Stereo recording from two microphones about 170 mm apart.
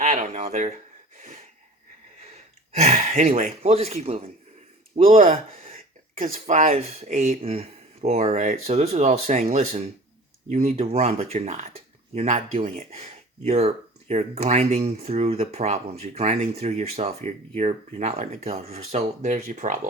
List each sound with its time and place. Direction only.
0.0 s a sound: 45° right (ahead or behind)
2.7 s speech: 45° right (ahead or behind)
6.1 s speech: 50° right (ahead or behind)